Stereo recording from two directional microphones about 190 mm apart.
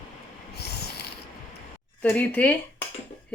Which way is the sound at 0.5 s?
60° left (ahead or behind).